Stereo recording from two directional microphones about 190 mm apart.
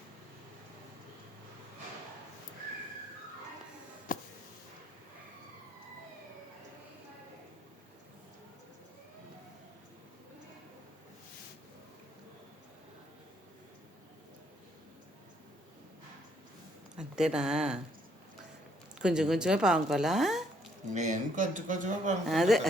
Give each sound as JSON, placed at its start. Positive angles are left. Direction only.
{"t": 4.1, "sound": "a sound", "side_deg": 45}
{"t": 16.9, "sound": "speech", "side_deg": -5}
{"t": 18.9, "sound": "a woman's voice", "side_deg": -5}
{"t": 20.9, "sound": "speech", "side_deg": -40}
{"t": 22.3, "sound": "a woman's voice", "side_deg": 0}